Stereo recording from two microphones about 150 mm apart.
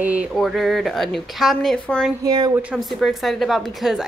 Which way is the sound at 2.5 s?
5° right (ahead or behind).